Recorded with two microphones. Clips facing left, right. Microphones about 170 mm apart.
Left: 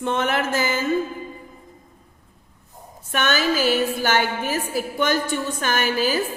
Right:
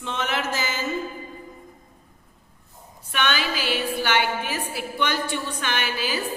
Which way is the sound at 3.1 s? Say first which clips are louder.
Left 4 dB; 45° left (ahead or behind).